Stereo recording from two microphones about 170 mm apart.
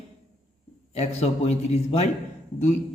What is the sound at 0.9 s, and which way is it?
Speech, 40° left (ahead or behind).